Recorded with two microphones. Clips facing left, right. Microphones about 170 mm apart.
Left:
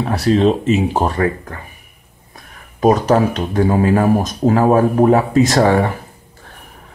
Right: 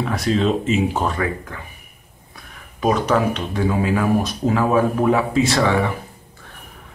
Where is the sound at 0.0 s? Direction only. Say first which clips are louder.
Left 5 dB; 35° left (ahead or behind).